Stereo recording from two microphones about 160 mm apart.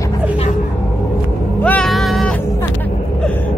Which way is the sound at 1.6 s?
10° left (ahead or behind).